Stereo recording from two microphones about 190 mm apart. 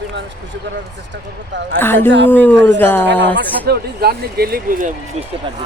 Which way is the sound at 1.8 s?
10° left (ahead or behind).